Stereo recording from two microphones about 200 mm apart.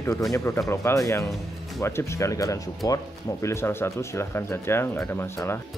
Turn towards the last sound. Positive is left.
turn(degrees=10)  # may be behind; listen again after turning